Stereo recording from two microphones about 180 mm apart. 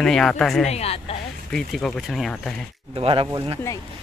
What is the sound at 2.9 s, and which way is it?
Speech, 30° right (ahead or behind).